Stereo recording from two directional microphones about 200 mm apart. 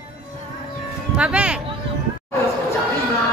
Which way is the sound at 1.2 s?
5° right (ahead or behind).